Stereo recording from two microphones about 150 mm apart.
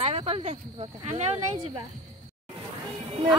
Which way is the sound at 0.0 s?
40° right (ahead or behind).